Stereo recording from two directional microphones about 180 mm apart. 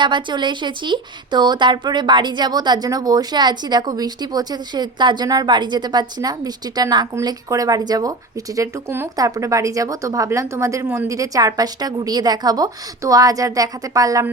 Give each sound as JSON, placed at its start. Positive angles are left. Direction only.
{"t": 0.0, "sound": "a woman's voice", "side_deg": -25}